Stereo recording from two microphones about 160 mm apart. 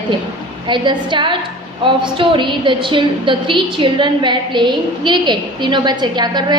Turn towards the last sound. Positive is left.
turn(degrees=-25)  # may be behind; listen again after turning